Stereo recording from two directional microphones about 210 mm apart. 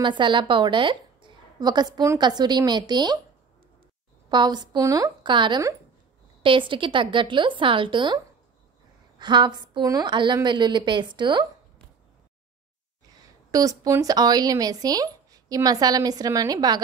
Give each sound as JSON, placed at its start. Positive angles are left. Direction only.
{"t": 0.0, "sound": "a woman's voice", "side_deg": -20}
{"t": 4.3, "sound": "a woman's voice", "side_deg": -20}
{"t": 9.2, "sound": "a woman's voice", "side_deg": -20}
{"t": 13.5, "sound": "speech", "side_deg": -15}